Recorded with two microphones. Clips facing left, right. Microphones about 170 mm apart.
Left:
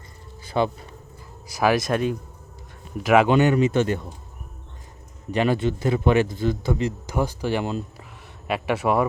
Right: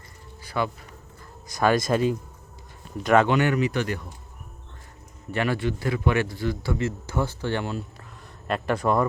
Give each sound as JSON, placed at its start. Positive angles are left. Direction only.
{"t": 0.4, "sound": "speech", "side_deg": 25}
{"t": 1.5, "sound": "speech", "side_deg": 5}
{"t": 3.0, "sound": "speech", "side_deg": 5}
{"t": 3.2, "sound": "a man's voice", "side_deg": 25}
{"t": 5.3, "sound": "a man's voice", "side_deg": 20}
{"t": 8.4, "sound": "speech", "side_deg": 5}